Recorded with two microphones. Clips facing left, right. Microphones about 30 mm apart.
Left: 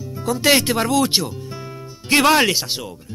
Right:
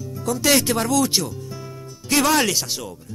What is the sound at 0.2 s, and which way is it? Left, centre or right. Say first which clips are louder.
Speech: left 2 dB; left.